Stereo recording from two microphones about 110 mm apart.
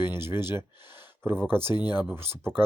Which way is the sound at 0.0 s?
20° right (ahead or behind).